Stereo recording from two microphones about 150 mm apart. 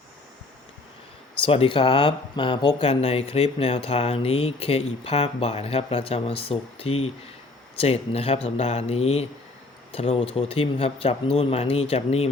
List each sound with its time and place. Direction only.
1.5 s speech: 40° left (ahead or behind)